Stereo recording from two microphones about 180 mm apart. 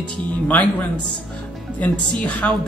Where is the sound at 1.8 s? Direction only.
10° left (ahead or behind).